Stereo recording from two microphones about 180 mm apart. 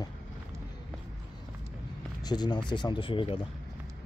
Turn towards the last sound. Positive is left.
turn(degrees=30)  # may be behind; listen again after turning